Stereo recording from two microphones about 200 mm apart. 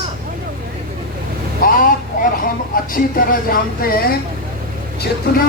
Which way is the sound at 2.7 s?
45° left (ahead or behind).